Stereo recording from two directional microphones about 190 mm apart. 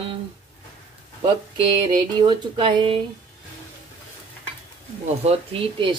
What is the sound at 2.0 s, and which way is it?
Speech, 25° right (ahead or behind).